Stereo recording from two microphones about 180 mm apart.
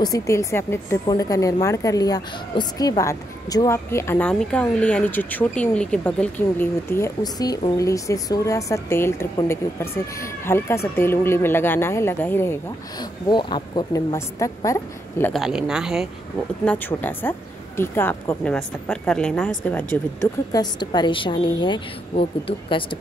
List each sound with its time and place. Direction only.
0.0 s a woman's voice: 20° left (ahead or behind)
13.0 s a woman's voice: 25° left (ahead or behind)
15.3 s speech: centre (ahead or behind)
16.6 s a woman's voice: 10° left (ahead or behind)
20.5 s a woman's voice: 25° left (ahead or behind)